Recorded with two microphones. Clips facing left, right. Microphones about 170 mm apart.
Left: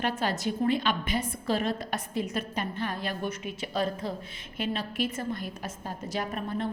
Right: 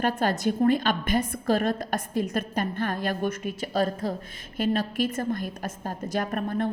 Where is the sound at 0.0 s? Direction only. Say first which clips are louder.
Right 5 dB; 50° right (ahead or behind).